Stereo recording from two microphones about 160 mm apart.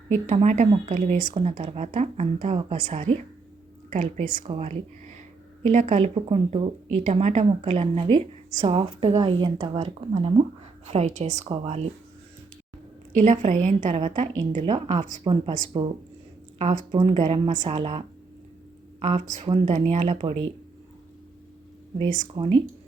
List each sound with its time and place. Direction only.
0.1 s a woman's voice: 45° right (ahead or behind)
4.4 s speech: 40° right (ahead or behind)
9.1 s a woman's voice: 25° right (ahead or behind); by 11.4 s 45° right (ahead or behind)
11.4 s speech: 35° right (ahead or behind)
13.1 s a woman's voice: 50° right (ahead or behind)
14.7 s speech: 30° right (ahead or behind)
16.6 s a woman's voice: 45° right (ahead or behind)
17.0 s speech: 30° right (ahead or behind)
17.2 s a woman's voice: 40° right (ahead or behind)
22.4 s speech: 25° right (ahead or behind)